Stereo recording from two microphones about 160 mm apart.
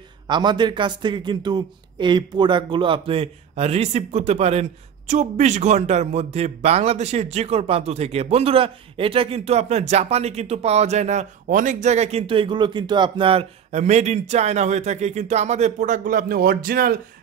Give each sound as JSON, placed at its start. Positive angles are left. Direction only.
{"t": 0.3, "sound": "a man's voice", "side_deg": -30}